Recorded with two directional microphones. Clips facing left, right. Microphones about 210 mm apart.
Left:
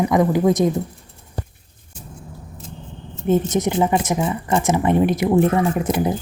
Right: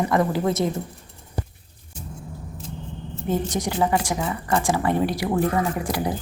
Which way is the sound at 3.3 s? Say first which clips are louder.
Left 7 dB; 20° left (ahead or behind).